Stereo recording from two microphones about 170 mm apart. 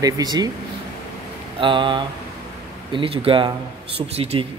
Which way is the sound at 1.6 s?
30° right (ahead or behind).